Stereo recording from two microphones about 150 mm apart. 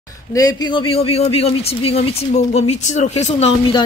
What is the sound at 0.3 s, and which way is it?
Speech, 25° left (ahead or behind).